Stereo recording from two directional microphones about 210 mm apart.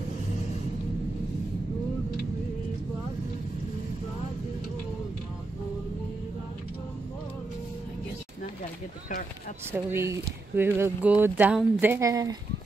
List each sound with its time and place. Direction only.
9.7 s speech: 10° right (ahead or behind)